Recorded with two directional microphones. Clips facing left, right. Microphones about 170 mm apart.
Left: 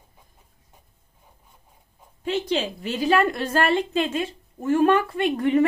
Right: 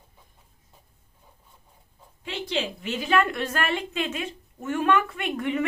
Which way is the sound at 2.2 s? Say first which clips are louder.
Left 5 dB; 35° left (ahead or behind).